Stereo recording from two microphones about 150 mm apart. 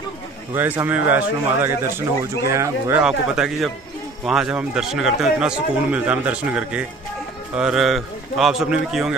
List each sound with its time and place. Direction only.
0.6 s speech: 15° right (ahead or behind)
3.0 s a man's voice: 5° right (ahead or behind)